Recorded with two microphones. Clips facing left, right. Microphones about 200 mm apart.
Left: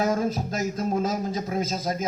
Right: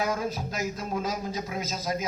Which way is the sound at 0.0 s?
45° left (ahead or behind).